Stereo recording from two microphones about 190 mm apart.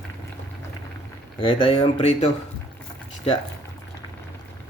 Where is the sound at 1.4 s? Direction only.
30° left (ahead or behind).